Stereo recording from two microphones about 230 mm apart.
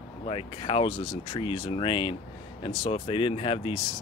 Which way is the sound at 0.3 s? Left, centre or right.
Left.